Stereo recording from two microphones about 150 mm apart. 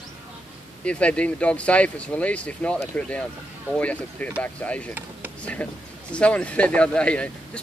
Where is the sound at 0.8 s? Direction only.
10° left (ahead or behind).